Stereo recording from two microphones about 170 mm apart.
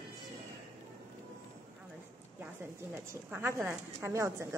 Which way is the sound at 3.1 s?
15° right (ahead or behind).